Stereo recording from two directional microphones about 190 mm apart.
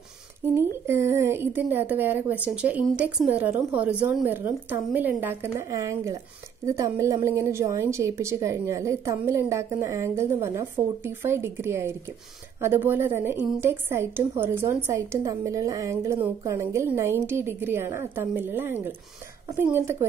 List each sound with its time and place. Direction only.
0.6 s a woman's voice: 15° right (ahead or behind)